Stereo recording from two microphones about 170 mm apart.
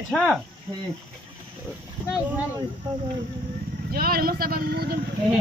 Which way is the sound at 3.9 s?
60° right (ahead or behind).